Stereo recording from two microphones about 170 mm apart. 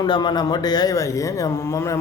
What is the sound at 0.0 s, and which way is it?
A man's voice, 25° left (ahead or behind).